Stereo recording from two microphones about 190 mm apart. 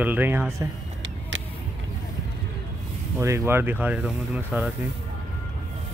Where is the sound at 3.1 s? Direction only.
15° right (ahead or behind).